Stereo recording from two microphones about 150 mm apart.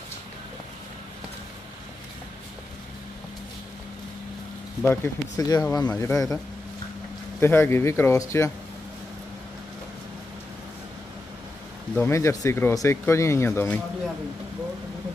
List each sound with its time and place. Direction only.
4.8 s speech: 20° left (ahead or behind)
11.9 s speech: 15° left (ahead or behind)